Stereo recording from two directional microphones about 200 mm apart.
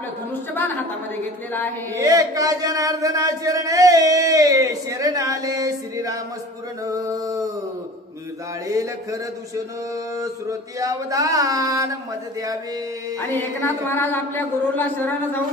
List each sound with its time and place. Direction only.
0.6 s a man's voice: 10° left (ahead or behind)
2.0 s speech: 15° right (ahead or behind)
6.9 s a sound: 15° right (ahead or behind)
8.6 s speech: 15° right (ahead or behind)
13.2 s a man's voice: 10° left (ahead or behind)